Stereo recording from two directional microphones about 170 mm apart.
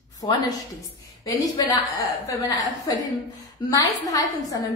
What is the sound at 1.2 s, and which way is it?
A woman's voice, 20° left (ahead or behind).